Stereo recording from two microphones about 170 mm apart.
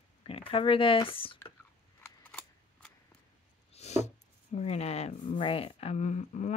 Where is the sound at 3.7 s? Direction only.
40° left (ahead or behind).